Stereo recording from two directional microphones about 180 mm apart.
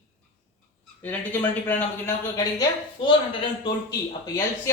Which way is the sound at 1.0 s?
10° left (ahead or behind).